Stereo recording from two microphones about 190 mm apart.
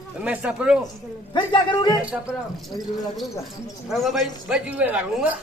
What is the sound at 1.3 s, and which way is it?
Speech, 25° left (ahead or behind).